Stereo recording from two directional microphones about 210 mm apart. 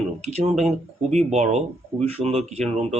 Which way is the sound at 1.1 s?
30° right (ahead or behind).